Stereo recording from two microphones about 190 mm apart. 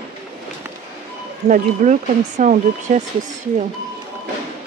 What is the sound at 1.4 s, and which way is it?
Speech, 40° right (ahead or behind).